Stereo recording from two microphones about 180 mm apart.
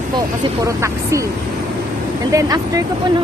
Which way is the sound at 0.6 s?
15° right (ahead or behind).